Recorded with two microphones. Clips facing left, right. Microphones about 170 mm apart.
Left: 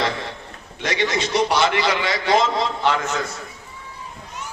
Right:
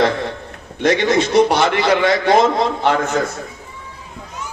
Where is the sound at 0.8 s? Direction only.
55° right (ahead or behind).